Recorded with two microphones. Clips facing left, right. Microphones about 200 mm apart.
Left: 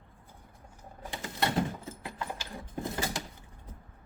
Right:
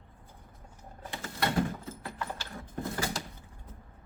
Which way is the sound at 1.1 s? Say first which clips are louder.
Left 1 dB; 15° left (ahead or behind).